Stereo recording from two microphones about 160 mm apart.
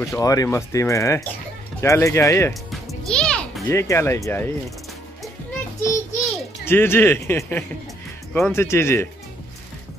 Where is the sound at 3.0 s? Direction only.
5° left (ahead or behind).